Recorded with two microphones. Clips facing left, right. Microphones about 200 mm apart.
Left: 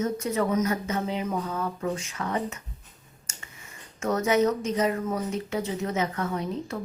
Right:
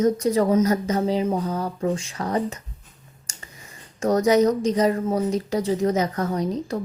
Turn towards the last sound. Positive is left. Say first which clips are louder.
# right 6 dB
turn(degrees=-40)  # may be behind; listen again after turning